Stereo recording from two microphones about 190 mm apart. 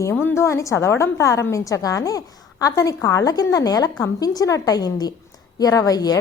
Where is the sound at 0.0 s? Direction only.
10° left (ahead or behind).